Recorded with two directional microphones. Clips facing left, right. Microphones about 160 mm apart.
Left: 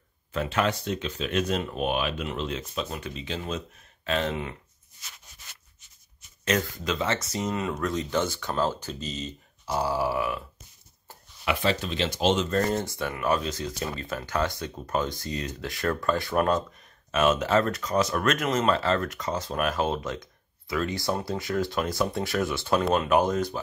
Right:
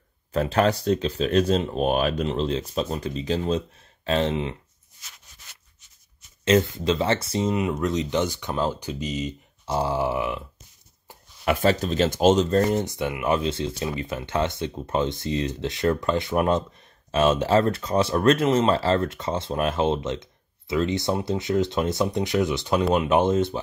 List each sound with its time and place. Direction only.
0.3 s speech: 35° right (ahead or behind)
1.9 s speech: 40° right (ahead or behind); by 4.6 s 25° right (ahead or behind)
6.4 s speech: 25° right (ahead or behind)
9.7 s speech: 25° right (ahead or behind)
11.4 s speech: 45° right (ahead or behind)
12.6 s speech: 15° right (ahead or behind)